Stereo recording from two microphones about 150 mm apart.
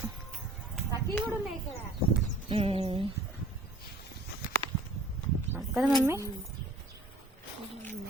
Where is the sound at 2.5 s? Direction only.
40° right (ahead or behind).